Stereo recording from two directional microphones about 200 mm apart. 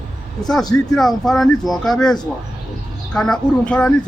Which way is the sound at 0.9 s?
Centre (ahead or behind).